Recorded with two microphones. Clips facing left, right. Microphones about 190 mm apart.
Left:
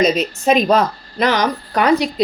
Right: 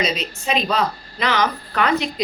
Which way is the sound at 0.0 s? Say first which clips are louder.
Left 8 dB; 45° left (ahead or behind).